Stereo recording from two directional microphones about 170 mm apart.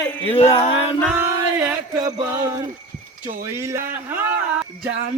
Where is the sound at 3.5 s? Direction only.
15° right (ahead or behind).